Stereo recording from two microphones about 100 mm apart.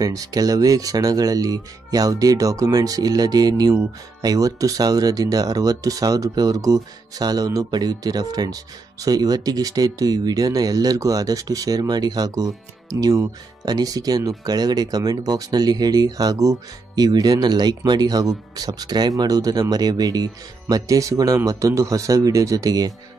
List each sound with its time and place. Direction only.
0.0 s speech: 40° right (ahead or behind)